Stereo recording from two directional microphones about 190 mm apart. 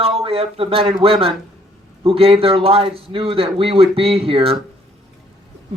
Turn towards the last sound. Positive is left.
turn(degrees=-30)  # may be behind; listen again after turning